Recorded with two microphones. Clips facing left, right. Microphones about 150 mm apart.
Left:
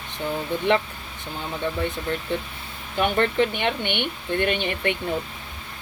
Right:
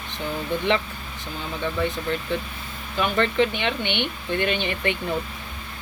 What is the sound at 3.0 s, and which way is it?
Speech, 50° left (ahead or behind).